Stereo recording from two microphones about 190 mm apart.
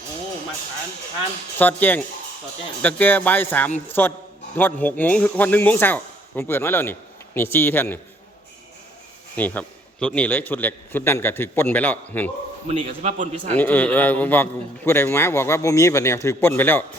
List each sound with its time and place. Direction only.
1.5 s a man's voice: 10° left (ahead or behind)
9.3 s a man's voice: 10° left (ahead or behind)
12.6 s a man's voice: 35° right (ahead or behind)
13.6 s a man's voice: 10° left (ahead or behind)